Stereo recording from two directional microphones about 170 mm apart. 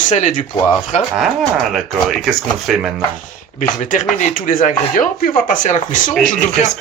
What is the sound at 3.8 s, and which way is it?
Speech, 50° left (ahead or behind).